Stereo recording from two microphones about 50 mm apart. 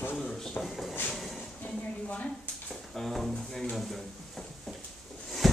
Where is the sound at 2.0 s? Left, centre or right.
Left.